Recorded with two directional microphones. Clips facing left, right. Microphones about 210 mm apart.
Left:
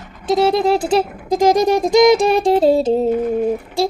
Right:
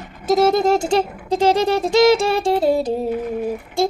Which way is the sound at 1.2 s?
10° left (ahead or behind).